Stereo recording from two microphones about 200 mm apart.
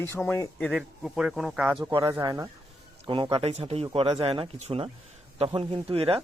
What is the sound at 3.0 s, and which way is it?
Speech, 25° right (ahead or behind).